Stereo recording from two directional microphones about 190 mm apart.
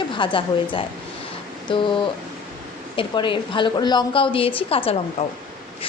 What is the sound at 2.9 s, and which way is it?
A woman's voice, 25° left (ahead or behind).